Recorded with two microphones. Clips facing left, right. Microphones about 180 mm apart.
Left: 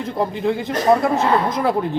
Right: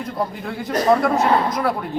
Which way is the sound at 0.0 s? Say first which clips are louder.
Left 5 dB; 20° left (ahead or behind).